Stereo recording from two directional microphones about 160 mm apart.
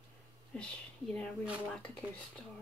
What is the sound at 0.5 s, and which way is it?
Speech, 5° left (ahead or behind).